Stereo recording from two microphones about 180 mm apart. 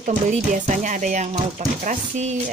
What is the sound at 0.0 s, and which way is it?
Speech, 45° right (ahead or behind).